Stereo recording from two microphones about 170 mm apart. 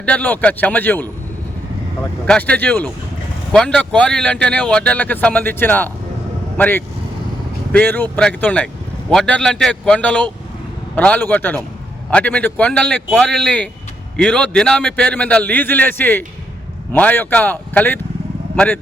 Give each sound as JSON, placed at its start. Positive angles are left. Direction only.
{"t": 0.0, "sound": "speech", "side_deg": 10}
{"t": 2.2, "sound": "a man's voice", "side_deg": 5}